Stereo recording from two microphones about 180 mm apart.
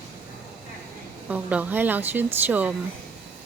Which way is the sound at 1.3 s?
10° right (ahead or behind).